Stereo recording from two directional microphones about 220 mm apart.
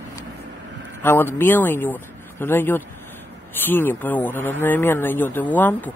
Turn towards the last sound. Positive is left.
turn(degrees=5)  # may be behind; listen again after turning